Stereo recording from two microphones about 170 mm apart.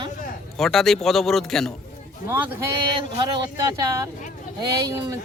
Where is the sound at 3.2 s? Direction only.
25° right (ahead or behind).